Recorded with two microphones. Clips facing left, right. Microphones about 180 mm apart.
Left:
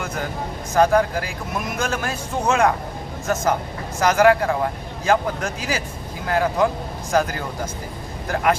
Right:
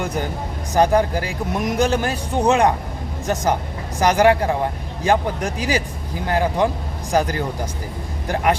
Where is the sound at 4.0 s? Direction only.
35° right (ahead or behind).